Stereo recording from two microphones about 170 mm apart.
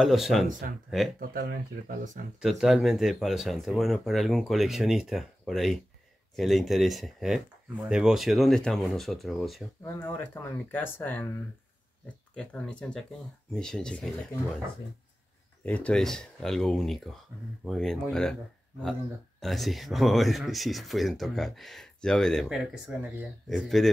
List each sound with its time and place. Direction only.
0.0 s speech: centre (ahead or behind)
0.5 s speech: 50° right (ahead or behind)
0.8 s speech: centre (ahead or behind)
1.3 s speech: 60° right (ahead or behind)
2.4 s speech: centre (ahead or behind)
9.9 s speech: 10° left (ahead or behind)
12.4 s speech: 5° left (ahead or behind)
15.6 s speech: 5° left (ahead or behind)